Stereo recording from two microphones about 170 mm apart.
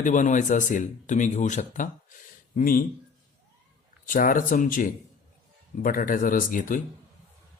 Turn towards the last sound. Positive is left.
turn(degrees=50)  # may be behind; listen again after turning